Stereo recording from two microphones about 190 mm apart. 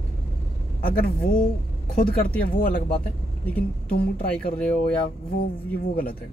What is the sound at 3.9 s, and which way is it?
Speech, 55° left (ahead or behind).